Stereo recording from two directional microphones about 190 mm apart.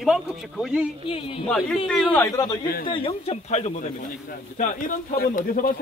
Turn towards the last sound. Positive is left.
turn(degrees=45)  # may be behind; listen again after turning